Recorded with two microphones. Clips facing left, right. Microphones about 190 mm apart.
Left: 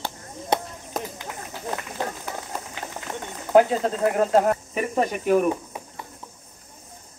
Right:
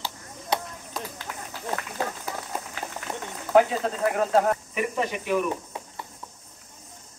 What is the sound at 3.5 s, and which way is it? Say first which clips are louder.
Speech: left 3 dB; 30° left (ahead or behind).